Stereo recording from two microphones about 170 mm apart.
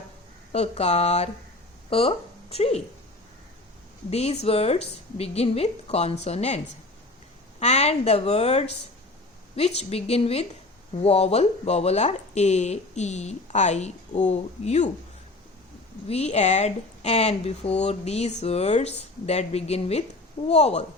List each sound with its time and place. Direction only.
0.5 s speech: 40° left (ahead or behind)
4.1 s speech: 40° left (ahead or behind)
7.6 s speech: 40° left (ahead or behind)
16.0 s speech: 40° left (ahead or behind)